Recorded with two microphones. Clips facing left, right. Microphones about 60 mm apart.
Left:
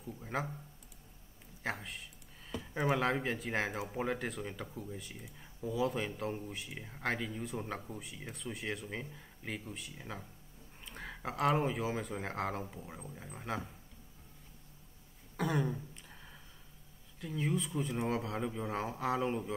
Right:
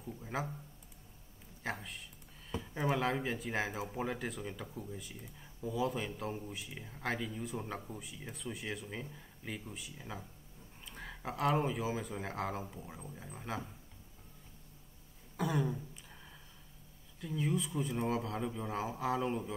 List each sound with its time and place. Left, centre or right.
0.3 s speech: centre
1.6 s speech: centre
5.1 s speech: centre
5.6 s speech: centre
6.7 s speech: centre
7.0 s speech: centre
15.3 s throat clearing: centre
17.2 s speech: centre